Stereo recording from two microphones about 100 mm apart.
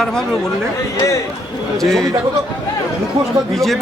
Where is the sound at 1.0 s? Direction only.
30° left (ahead or behind).